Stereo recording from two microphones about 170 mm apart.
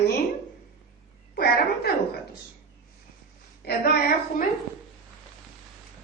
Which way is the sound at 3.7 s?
55° left (ahead or behind).